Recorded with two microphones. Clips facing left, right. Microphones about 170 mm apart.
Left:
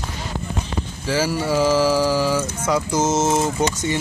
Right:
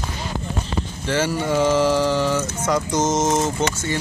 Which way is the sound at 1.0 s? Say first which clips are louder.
Left 1 dB; 5° left (ahead or behind).